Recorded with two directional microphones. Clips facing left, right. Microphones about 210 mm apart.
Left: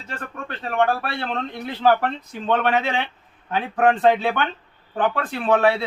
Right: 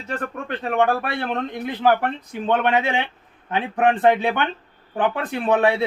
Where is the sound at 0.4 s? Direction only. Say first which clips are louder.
Right 1 dB; 15° right (ahead or behind).